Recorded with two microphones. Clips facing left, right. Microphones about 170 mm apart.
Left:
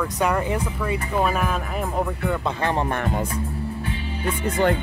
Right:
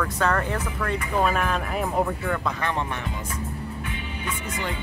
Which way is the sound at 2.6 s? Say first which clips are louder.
Left 4 dB; 35° left (ahead or behind).